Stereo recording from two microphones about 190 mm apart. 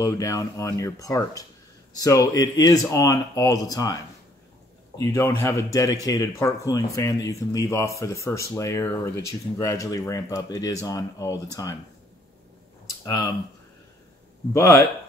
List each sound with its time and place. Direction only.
0.0 s speech: 15° left (ahead or behind)
13.0 s speech: 20° left (ahead or behind)
14.5 s speech: 15° left (ahead or behind)